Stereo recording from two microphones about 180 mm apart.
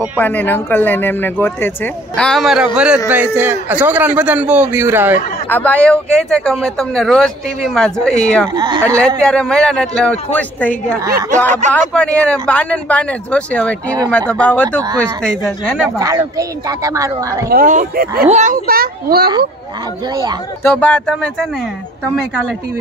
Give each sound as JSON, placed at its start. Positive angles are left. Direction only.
{"t": 0.2, "sound": "a man's voice", "side_deg": 10}
{"t": 5.5, "sound": "speech", "side_deg": 10}
{"t": 8.5, "sound": "speech", "side_deg": -25}
{"t": 9.2, "sound": "speech", "side_deg": 5}
{"t": 11.1, "sound": "a man's voice", "side_deg": -20}
{"t": 11.7, "sound": "speech", "side_deg": 5}
{"t": 16.0, "sound": "speech", "side_deg": -20}
{"t": 17.5, "sound": "a child's voice", "side_deg": -50}
{"t": 18.3, "sound": "a child's voice", "side_deg": -45}
{"t": 20.6, "sound": "speech", "side_deg": 5}